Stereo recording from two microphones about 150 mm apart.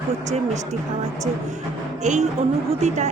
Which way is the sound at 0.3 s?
50° right (ahead or behind).